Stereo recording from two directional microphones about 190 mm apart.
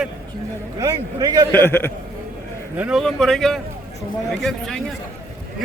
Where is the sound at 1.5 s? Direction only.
10° left (ahead or behind).